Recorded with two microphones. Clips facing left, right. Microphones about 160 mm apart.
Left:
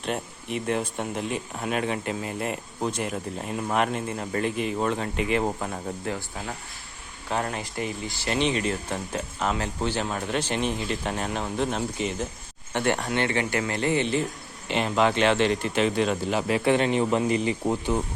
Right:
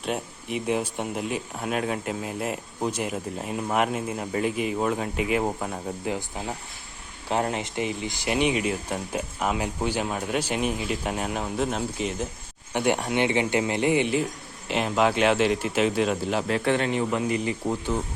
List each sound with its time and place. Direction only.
0.0 s speech: 5° right (ahead or behind)
6.1 s speech: 20° right (ahead or behind); by 16.6 s centre (ahead or behind)
16.6 s speech: 15° left (ahead or behind)